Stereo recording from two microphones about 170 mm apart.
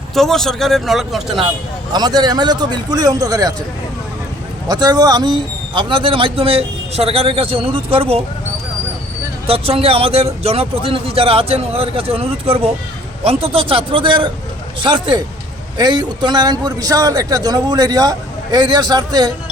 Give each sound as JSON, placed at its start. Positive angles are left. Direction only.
{"t": 0.1, "sound": "speech", "side_deg": 0}
{"t": 1.9, "sound": "a man's voice", "side_deg": -25}
{"t": 4.7, "sound": "a man's voice", "side_deg": -25}
{"t": 9.5, "sound": "a man's voice", "side_deg": -35}